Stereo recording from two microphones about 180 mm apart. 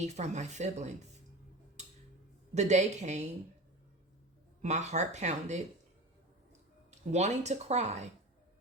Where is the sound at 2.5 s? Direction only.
40° right (ahead or behind).